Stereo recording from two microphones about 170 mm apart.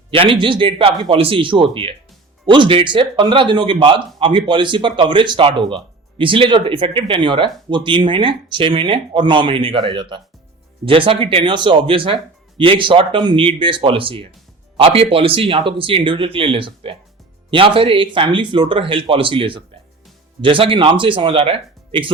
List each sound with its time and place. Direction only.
0.1 s speech: 30° right (ahead or behind)